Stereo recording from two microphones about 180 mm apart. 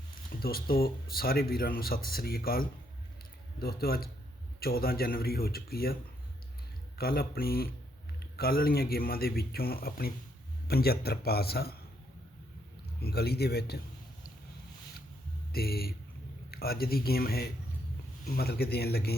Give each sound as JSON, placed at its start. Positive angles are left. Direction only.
{"t": 0.3, "sound": "a man's voice", "side_deg": 55}
{"t": 7.0, "sound": "a man's voice", "side_deg": 55}
{"t": 13.0, "sound": "a man's voice", "side_deg": 60}
{"t": 15.5, "sound": "a man's voice", "side_deg": 60}